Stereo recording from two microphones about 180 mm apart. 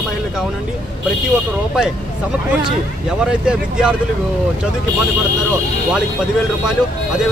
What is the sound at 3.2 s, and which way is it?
Speech, 5° right (ahead or behind).